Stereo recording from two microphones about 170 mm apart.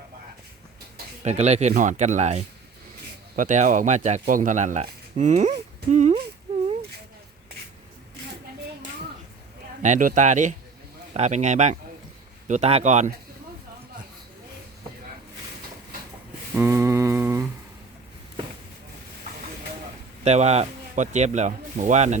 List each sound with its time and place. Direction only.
1.2 s speech: 40° right (ahead or behind)
9.8 s speech: 50° right (ahead or behind)
16.6 s humming: 15° right (ahead or behind)
20.2 s speech: 40° right (ahead or behind)